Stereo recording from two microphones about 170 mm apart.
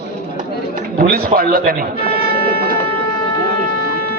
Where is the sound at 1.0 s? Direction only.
60° right (ahead or behind).